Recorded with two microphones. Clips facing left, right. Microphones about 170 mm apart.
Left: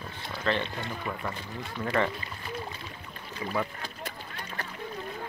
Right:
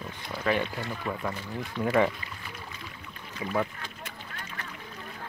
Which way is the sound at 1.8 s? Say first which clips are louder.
Right 4 dB; 10° right (ahead or behind).